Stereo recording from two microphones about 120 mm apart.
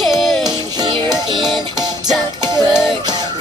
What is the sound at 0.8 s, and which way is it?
Music, 35° right (ahead or behind).